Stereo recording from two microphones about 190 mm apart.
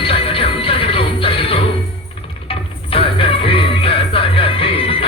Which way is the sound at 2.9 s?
30° left (ahead or behind).